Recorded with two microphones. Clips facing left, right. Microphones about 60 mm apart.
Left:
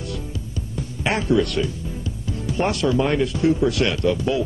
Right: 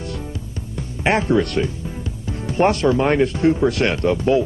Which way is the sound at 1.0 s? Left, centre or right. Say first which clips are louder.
Right 3 dB; right.